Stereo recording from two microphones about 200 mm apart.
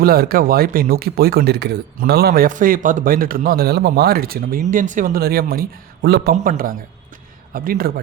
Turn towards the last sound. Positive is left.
turn(degrees=-45)  # may be behind; listen again after turning